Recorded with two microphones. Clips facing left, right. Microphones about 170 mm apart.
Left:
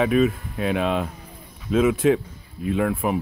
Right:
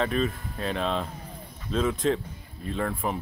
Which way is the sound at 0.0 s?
10° left (ahead or behind).